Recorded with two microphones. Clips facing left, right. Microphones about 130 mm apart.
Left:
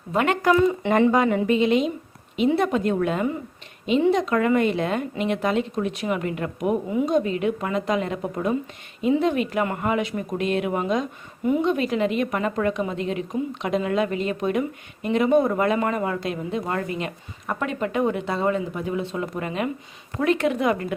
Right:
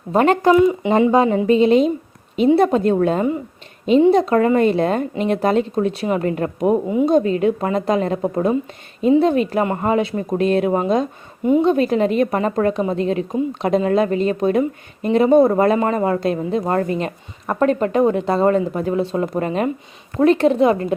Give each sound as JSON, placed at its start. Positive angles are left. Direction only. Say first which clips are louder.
{"t": 0.1, "sound": "speech", "louder": "right 6 dB", "side_deg": -35}
{"t": 0.6, "sound": "speech", "louder": "right 5 dB", "side_deg": -15}
{"t": 1.1, "sound": "a woman's voice", "louder": "right 5 dB", "side_deg": -25}